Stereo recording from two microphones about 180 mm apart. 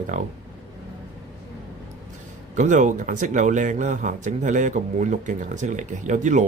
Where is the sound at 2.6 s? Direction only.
45° right (ahead or behind).